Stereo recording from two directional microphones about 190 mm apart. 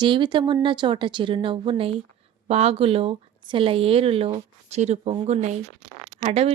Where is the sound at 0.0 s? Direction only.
25° right (ahead or behind).